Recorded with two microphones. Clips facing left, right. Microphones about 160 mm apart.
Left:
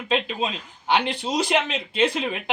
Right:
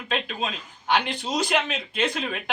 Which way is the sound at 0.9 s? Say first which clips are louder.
Left 2 dB; 30° left (ahead or behind).